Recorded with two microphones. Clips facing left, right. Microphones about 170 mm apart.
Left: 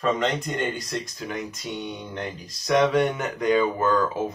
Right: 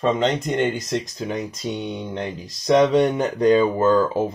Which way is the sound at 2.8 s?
30° right (ahead or behind).